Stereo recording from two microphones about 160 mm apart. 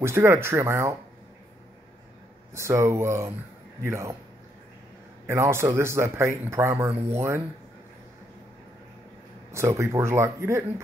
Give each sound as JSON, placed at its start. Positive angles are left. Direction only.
{"t": 0.0, "sound": "speech", "side_deg": -15}
{"t": 2.5, "sound": "speech", "side_deg": -15}
{"t": 5.2, "sound": "speech", "side_deg": -15}
{"t": 9.5, "sound": "speech", "side_deg": -15}